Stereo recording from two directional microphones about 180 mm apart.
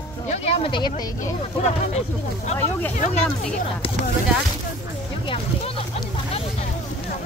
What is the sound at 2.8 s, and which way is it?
Speech, 10° left (ahead or behind).